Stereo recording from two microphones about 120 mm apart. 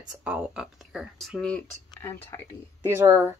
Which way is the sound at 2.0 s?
20° left (ahead or behind).